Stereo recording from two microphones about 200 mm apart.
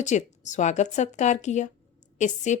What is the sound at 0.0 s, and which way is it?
A woman's voice, 35° left (ahead or behind).